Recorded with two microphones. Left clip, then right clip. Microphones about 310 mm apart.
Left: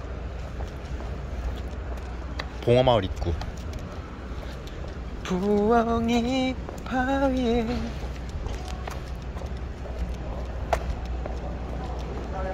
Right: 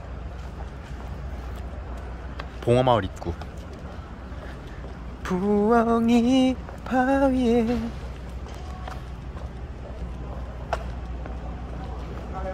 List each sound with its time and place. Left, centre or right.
2.6 s speech: centre
5.2 s a sound: centre
10.7 s vehicle: left